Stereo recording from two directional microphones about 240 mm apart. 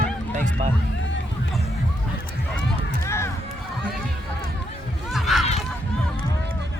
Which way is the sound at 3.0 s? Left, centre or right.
Centre.